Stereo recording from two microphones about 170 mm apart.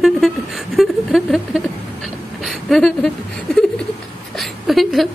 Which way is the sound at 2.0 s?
Centre (ahead or behind).